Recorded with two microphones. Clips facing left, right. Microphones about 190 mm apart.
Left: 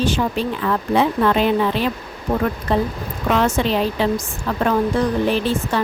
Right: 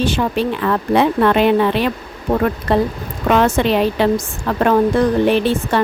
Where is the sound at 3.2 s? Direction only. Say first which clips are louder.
Right 4 dB; 60° right (ahead or behind).